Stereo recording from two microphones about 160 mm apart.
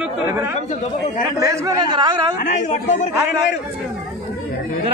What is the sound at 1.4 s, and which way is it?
Speech, 25° right (ahead or behind).